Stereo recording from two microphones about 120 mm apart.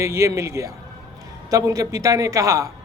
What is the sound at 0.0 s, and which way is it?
A man's voice, 25° right (ahead or behind).